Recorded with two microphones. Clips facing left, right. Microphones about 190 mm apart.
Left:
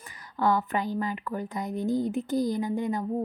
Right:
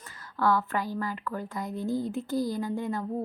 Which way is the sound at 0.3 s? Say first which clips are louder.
Left 1 dB; 20° left (ahead or behind).